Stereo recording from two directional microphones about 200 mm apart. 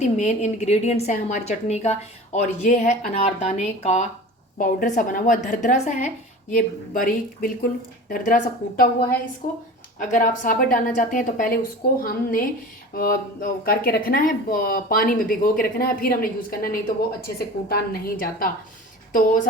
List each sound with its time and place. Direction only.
0.0 s a woman's voice: 35° left (ahead or behind)